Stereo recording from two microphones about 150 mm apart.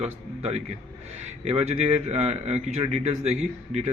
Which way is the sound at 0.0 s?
45° right (ahead or behind).